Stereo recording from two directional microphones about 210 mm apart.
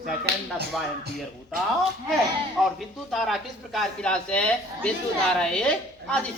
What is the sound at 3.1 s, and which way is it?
A man's voice, centre (ahead or behind).